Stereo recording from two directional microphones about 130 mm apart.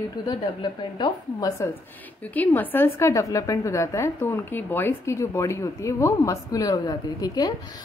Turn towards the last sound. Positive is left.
turn(degrees=30)  # may be behind; listen again after turning